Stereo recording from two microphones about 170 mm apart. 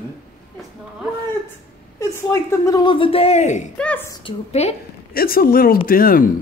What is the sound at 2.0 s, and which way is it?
Speech, 15° left (ahead or behind).